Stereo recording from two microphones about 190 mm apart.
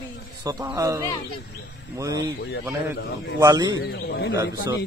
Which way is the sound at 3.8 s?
55° left (ahead or behind).